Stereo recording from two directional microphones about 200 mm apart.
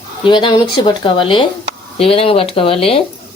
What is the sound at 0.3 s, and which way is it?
Speech, 25° left (ahead or behind).